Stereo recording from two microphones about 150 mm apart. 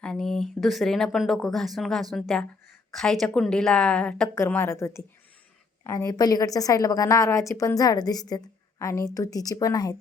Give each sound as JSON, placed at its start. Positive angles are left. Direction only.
{"t": 0.0, "sound": "a woman's voice", "side_deg": 5}